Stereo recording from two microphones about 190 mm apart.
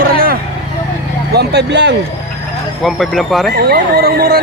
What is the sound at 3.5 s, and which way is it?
Speech, 55° right (ahead or behind).